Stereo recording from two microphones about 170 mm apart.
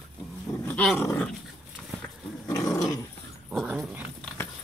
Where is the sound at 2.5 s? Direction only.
20° left (ahead or behind).